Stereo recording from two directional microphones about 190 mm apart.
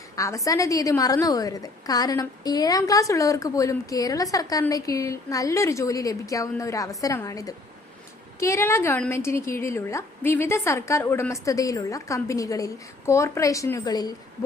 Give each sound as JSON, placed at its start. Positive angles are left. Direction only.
{"t": 0.2, "sound": "a woman's voice", "side_deg": 15}